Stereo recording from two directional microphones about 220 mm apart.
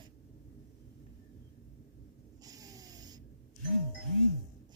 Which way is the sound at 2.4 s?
15° right (ahead or behind).